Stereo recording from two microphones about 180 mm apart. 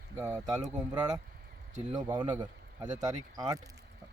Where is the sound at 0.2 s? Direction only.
20° right (ahead or behind).